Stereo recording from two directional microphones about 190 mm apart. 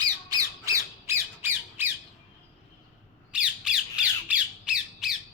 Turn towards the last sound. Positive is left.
turn(degrees=-5)  # may be behind; listen again after turning